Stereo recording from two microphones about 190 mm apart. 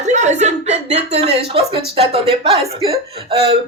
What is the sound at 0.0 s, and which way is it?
Speech, 40° right (ahead or behind).